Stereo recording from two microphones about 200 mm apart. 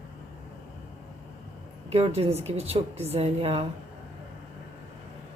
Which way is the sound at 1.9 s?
30° right (ahead or behind).